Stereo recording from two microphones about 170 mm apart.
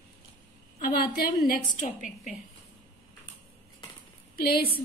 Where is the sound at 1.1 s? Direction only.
55° left (ahead or behind).